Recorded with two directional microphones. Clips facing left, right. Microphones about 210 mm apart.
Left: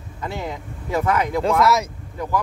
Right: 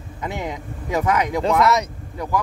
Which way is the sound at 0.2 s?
15° right (ahead or behind).